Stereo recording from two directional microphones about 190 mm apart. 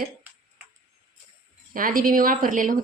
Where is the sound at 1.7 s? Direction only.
45° right (ahead or behind).